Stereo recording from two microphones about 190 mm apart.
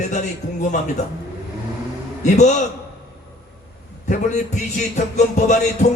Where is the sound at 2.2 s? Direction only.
40° left (ahead or behind).